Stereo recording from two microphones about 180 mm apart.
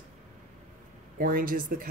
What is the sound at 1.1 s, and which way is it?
Speech, 50° right (ahead or behind).